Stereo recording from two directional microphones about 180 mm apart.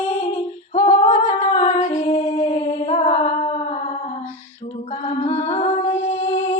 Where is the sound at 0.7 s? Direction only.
40° left (ahead or behind).